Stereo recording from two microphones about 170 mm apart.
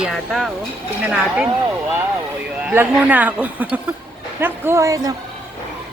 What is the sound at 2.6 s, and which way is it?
Speech, 10° right (ahead or behind).